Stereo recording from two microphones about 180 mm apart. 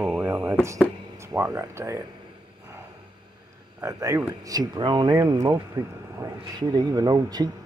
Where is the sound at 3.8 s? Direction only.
15° right (ahead or behind).